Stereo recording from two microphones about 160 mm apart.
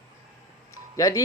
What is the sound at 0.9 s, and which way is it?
Speech, 20° left (ahead or behind).